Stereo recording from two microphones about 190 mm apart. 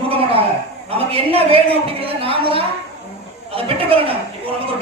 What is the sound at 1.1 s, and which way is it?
A man's voice, 30° right (ahead or behind).